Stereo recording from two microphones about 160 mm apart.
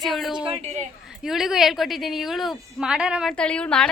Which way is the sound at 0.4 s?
40° right (ahead or behind).